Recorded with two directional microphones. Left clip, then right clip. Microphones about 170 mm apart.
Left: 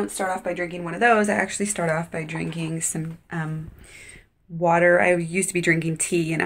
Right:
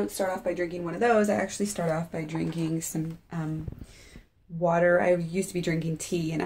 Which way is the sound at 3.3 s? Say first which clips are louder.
Left 8 dB; centre (ahead or behind).